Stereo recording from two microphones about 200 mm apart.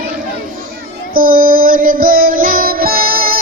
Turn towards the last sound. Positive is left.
turn(degrees=-45)  # may be behind; listen again after turning